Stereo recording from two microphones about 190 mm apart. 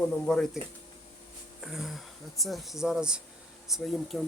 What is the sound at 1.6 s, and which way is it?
Speech, centre (ahead or behind).